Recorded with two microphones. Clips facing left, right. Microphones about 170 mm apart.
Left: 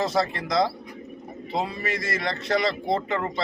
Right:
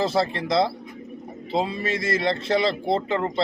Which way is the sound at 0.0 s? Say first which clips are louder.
Right 2 dB; 30° right (ahead or behind).